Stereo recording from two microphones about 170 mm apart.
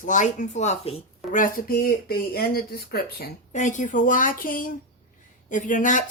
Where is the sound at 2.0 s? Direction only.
65° left (ahead or behind).